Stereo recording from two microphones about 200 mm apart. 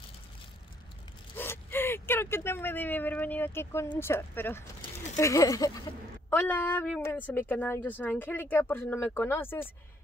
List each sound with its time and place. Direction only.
1.3 s zipper: 10° left (ahead or behind)
3.9 s a woman's voice: 10° left (ahead or behind)